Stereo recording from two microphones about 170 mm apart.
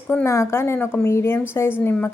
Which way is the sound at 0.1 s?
15° left (ahead or behind).